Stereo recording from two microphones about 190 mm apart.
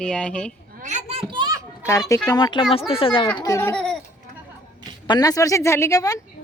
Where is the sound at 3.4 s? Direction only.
15° left (ahead or behind).